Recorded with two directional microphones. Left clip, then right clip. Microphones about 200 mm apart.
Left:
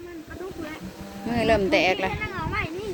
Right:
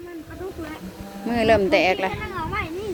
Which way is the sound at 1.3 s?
10° right (ahead or behind).